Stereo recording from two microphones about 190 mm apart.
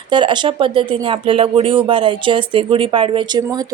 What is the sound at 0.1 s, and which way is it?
A woman's voice, 25° right (ahead or behind).